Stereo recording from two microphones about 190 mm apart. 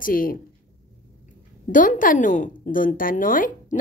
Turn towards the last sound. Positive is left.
turn(degrees=45)  # may be behind; listen again after turning